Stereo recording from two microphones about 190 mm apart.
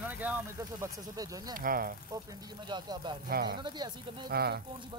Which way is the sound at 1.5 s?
45° right (ahead or behind).